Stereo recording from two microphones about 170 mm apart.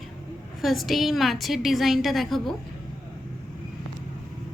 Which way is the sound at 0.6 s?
Centre (ahead or behind).